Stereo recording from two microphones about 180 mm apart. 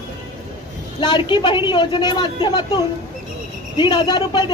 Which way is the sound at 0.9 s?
25° left (ahead or behind).